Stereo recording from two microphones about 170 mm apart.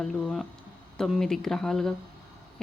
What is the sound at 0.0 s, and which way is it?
A woman's voice, centre (ahead or behind).